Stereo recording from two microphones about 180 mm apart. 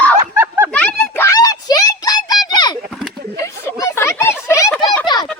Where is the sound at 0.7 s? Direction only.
10° left (ahead or behind).